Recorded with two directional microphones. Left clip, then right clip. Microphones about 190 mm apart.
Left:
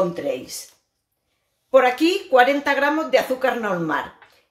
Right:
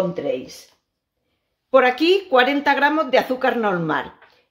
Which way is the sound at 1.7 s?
40° right (ahead or behind).